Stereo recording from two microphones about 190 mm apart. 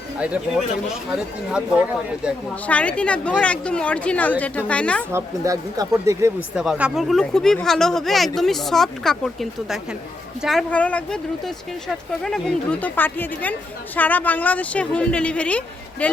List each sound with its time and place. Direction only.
0.2 s speech: 5° right (ahead or behind)
2.6 s speech: 5° left (ahead or behind)
5.1 s speech: 15° right (ahead or behind)
6.6 s speech: 5° right (ahead or behind)